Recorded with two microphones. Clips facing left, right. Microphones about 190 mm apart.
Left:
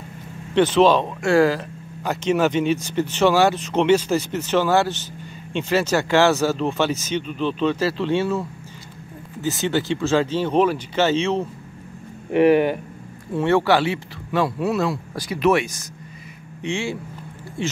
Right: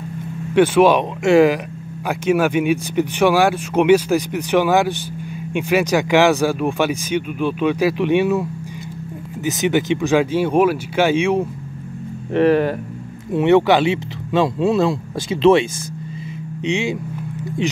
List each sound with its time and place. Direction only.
0.6 s speech: 10° right (ahead or behind)
12.3 s speech: 5° left (ahead or behind)
13.3 s speech: 20° right (ahead or behind)
16.6 s speech: 20° right (ahead or behind)